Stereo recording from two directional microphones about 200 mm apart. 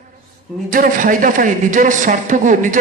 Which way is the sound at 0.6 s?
45° right (ahead or behind).